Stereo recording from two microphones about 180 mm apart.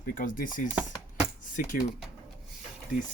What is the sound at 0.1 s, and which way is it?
Chopping, 50° left (ahead or behind).